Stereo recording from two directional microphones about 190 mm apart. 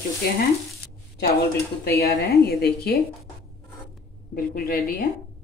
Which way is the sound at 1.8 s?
55° left (ahead or behind).